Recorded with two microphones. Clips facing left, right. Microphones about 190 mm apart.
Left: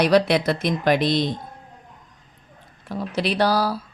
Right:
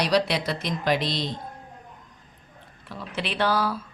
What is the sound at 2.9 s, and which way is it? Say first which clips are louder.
Speech: left 8 dB; 40° left (ahead or behind).